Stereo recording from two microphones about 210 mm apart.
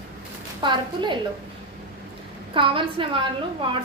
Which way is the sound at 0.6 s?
20° right (ahead or behind).